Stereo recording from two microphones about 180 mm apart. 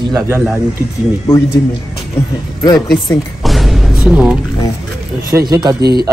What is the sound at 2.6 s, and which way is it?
Speech, 20° left (ahead or behind).